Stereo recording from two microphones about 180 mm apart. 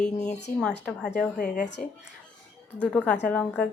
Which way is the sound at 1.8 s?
50° left (ahead or behind).